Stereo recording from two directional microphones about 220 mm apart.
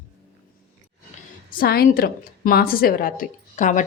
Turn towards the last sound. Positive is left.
turn(degrees=35)  # may be behind; listen again after turning